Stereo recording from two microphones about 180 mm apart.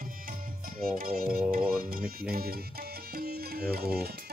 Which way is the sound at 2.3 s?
55° right (ahead or behind).